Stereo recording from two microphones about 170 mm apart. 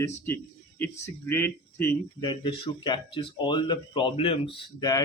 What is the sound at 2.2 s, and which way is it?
Speech, 25° left (ahead or behind).